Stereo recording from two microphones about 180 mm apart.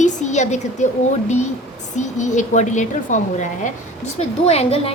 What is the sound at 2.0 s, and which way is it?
A woman's voice, 40° left (ahead or behind).